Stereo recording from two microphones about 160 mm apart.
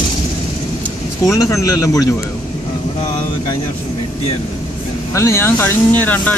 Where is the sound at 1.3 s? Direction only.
20° left (ahead or behind).